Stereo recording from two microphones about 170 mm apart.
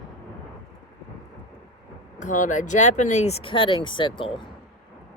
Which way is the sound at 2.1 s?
45° left (ahead or behind).